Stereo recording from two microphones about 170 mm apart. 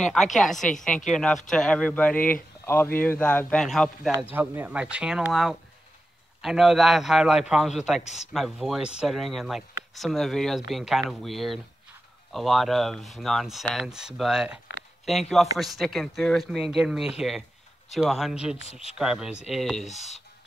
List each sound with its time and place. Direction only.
0.0 s a man's voice: centre (ahead or behind)
4.3 s speech: 10° right (ahead or behind)
8.0 s speech: 40° left (ahead or behind)
8.3 s speech: centre (ahead or behind)
19.9 s speech: 40° left (ahead or behind)